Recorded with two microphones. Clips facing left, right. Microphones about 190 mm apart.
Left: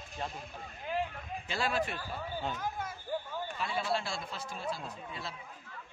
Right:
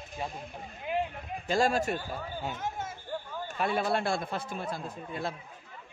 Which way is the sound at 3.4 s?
55° right (ahead or behind).